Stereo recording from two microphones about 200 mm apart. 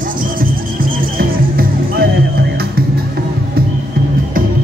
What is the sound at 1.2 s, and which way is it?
Music, 50° right (ahead or behind).